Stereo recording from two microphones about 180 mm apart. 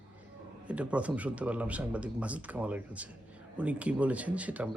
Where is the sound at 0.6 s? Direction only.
5° right (ahead or behind).